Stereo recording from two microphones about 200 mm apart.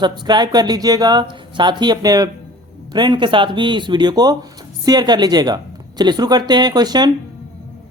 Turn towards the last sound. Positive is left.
turn(degrees=-20)  # may be behind; listen again after turning